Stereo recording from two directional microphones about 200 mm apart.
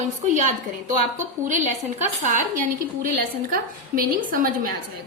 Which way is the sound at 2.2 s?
40° right (ahead or behind).